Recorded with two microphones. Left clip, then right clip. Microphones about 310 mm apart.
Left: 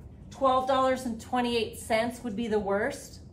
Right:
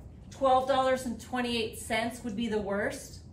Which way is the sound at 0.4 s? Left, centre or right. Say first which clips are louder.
Left 1 dB; centre.